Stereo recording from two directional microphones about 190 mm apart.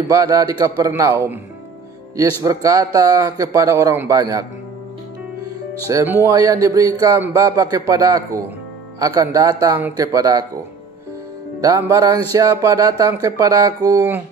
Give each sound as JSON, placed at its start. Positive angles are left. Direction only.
{"t": 0.1, "sound": "speech", "side_deg": -20}
{"t": 5.9, "sound": "speech", "side_deg": -15}
{"t": 11.6, "sound": "speech", "side_deg": -20}